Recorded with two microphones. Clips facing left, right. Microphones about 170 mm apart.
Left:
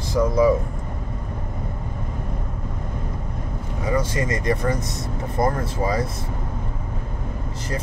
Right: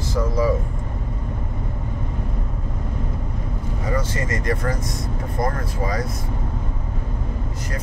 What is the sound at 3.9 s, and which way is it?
Speech, 15° left (ahead or behind).